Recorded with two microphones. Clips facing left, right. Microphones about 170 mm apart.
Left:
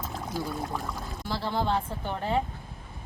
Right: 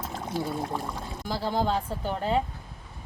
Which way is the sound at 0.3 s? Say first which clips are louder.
Right 3 dB; 25° right (ahead or behind).